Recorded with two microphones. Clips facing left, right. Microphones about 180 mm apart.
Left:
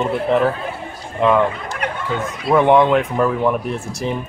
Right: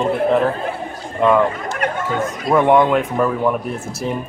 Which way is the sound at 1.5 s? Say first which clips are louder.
Right 3 dB; 45° right (ahead or behind).